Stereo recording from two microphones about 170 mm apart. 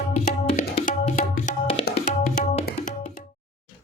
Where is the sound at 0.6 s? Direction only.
65° left (ahead or behind).